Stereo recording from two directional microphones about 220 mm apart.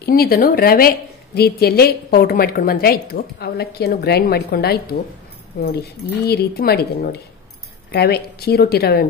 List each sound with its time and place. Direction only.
0.0 s a woman's voice: 45° left (ahead or behind)